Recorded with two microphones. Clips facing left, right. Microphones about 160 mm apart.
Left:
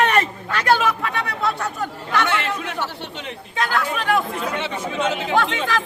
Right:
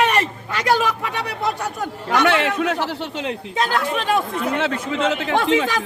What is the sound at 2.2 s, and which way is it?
Speech, 85° right.